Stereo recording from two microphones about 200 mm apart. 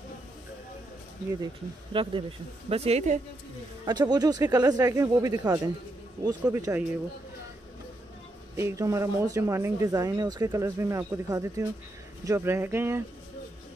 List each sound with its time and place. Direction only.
1.4 s a woman's voice: 25° right (ahead or behind)
3.8 s speech: 20° right (ahead or behind)
8.5 s speech: 15° right (ahead or behind)